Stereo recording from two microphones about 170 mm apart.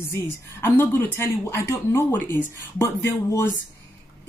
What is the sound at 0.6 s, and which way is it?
A woman's voice, 15° left (ahead or behind).